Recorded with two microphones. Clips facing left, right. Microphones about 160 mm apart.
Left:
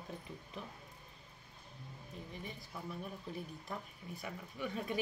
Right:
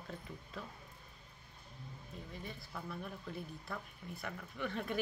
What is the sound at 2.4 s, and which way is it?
Speech, 15° left (ahead or behind).